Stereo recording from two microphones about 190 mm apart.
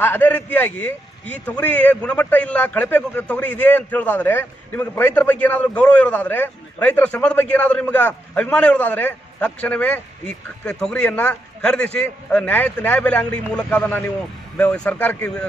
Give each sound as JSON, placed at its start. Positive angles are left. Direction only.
{"t": 0.0, "sound": "a man's voice", "side_deg": 10}